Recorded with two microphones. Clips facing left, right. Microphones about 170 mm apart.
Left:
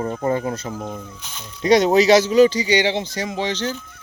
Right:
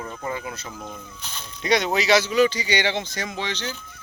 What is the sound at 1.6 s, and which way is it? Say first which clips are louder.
Speech: left 8 dB; 40° left (ahead or behind).